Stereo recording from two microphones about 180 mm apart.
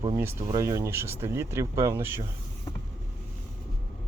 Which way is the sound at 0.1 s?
15° right (ahead or behind).